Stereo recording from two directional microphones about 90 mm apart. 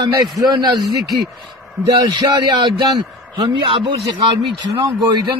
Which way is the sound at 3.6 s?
70° right (ahead or behind).